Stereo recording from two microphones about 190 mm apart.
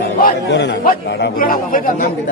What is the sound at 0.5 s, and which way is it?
A man's voice, 65° left (ahead or behind).